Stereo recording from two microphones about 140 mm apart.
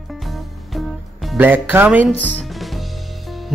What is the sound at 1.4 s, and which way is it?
Speech, 15° right (ahead or behind).